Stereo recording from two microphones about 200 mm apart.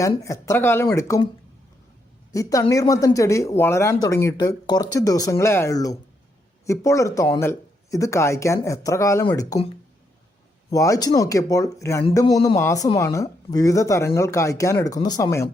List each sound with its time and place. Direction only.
0.2 s speech: 15° left (ahead or behind)
2.3 s speech: 15° left (ahead or behind)
10.7 s speech: 15° left (ahead or behind)